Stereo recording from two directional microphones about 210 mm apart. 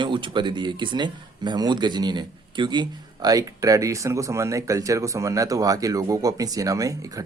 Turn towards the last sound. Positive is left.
turn(degrees=-15)  # may be behind; listen again after turning